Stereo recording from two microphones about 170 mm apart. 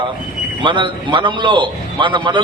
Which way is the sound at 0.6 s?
30° right (ahead or behind).